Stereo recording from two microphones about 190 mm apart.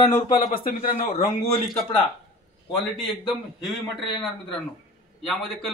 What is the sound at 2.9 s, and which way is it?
A man's voice, centre (ahead or behind).